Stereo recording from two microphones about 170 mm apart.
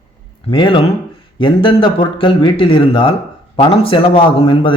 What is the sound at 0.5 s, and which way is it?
A man's voice, 30° left (ahead or behind).